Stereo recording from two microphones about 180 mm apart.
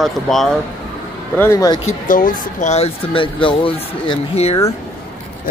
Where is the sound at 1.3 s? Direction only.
15° left (ahead or behind).